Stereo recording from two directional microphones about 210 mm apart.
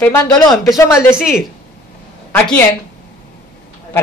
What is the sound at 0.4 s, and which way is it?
Speech, 15° left (ahead or behind).